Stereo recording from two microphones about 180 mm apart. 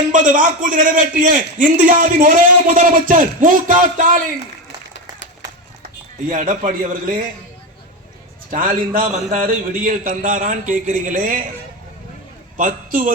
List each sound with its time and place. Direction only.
0.1 s a man's voice: 45° right (ahead or behind)
6.2 s a man's voice: 50° right (ahead or behind)
8.4 s a man's voice: 50° right (ahead or behind)
12.5 s a man's voice: 50° right (ahead or behind)